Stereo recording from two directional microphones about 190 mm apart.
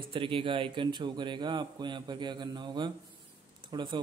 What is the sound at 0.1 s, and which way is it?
Speech, 25° right (ahead or behind).